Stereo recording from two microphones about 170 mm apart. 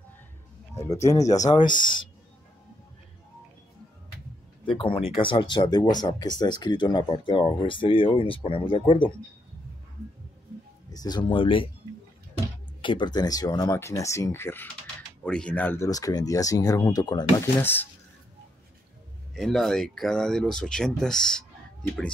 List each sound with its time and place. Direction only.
0.7 s speech: 15° left (ahead or behind)
1.2 s speech: 45° left (ahead or behind)
4.6 s speech: 30° left (ahead or behind)
10.9 s speech: 25° left (ahead or behind)
12.8 s speech: 25° left (ahead or behind)
17.6 s speech: 10° left (ahead or behind)
19.3 s speech: centre (ahead or behind)